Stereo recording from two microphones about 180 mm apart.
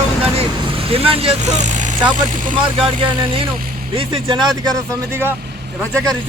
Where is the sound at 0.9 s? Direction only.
30° right (ahead or behind).